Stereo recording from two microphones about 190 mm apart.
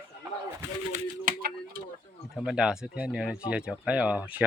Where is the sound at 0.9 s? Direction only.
45° right (ahead or behind).